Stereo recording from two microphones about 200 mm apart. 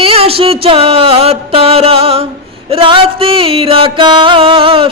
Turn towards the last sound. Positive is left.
turn(degrees=-25)  # may be behind; listen again after turning